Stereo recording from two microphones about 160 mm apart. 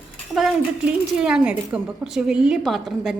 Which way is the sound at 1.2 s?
5° right (ahead or behind).